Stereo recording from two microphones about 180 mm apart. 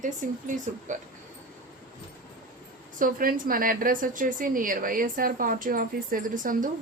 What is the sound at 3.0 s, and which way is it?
A woman's voice, 50° right (ahead or behind).